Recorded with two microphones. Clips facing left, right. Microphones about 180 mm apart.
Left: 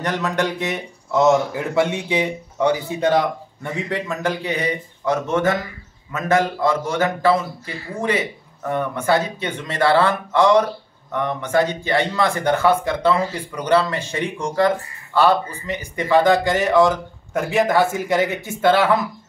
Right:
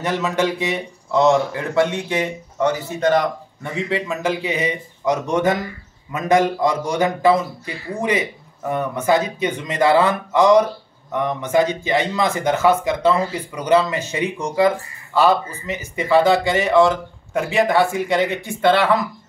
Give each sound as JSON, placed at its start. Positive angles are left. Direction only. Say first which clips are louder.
{"t": 0.0, "sound": "speech", "louder": "right 2 dB", "side_deg": -5}